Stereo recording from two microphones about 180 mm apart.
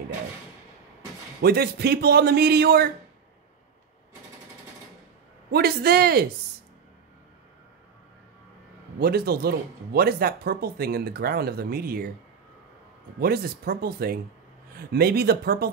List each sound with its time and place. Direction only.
1.4 s speech: 60° right (ahead or behind)
5.5 s speech: 60° right (ahead or behind)
9.0 s speech: 60° right (ahead or behind)
13.2 s speech: 60° right (ahead or behind)